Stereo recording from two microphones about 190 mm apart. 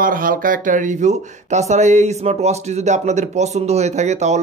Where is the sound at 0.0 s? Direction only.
50° right (ahead or behind).